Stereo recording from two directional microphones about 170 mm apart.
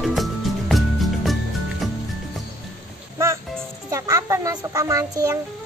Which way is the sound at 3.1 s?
15° right (ahead or behind).